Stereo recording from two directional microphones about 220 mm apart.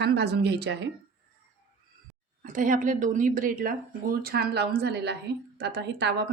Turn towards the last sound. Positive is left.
turn(degrees=-50)  # may be behind; listen again after turning